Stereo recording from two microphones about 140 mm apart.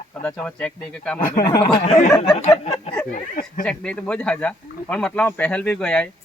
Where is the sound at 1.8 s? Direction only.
55° left (ahead or behind).